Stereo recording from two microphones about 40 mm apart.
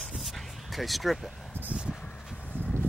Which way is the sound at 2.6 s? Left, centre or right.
Left.